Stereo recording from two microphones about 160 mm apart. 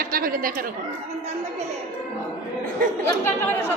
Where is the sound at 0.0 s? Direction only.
65° right (ahead or behind).